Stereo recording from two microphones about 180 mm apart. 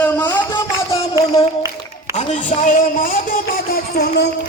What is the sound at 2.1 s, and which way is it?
Speech, 40° left (ahead or behind).